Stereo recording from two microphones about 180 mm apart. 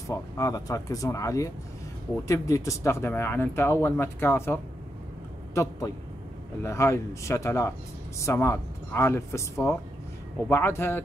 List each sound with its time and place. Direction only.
0.1 s speech: 20° left (ahead or behind)